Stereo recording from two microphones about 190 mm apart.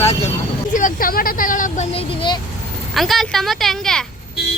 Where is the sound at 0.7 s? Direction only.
45° left (ahead or behind); by 2.4 s 25° left (ahead or behind).